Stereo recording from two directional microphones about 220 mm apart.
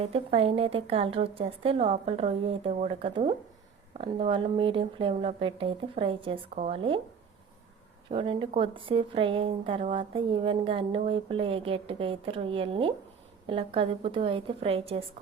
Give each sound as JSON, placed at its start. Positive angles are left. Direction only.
{"t": 0.0, "sound": "a woman's voice", "side_deg": -25}
{"t": 8.1, "sound": "a woman's voice", "side_deg": -20}